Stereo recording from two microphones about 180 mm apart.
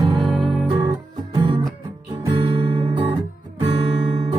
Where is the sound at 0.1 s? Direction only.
Centre (ahead or behind).